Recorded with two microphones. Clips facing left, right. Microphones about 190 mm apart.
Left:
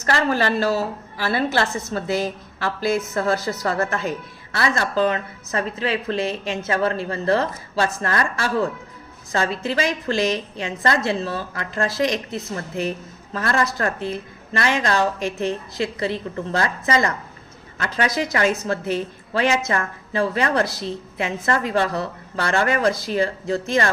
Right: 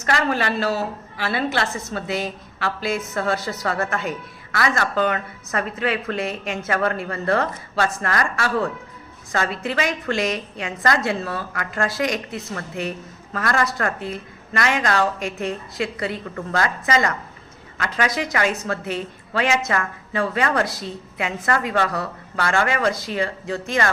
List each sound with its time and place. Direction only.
0.0 s a woman's voice: 35° left (ahead or behind)
3.2 s a woman's voice: 40° left (ahead or behind)
13.3 s a woman's voice: 30° left (ahead or behind)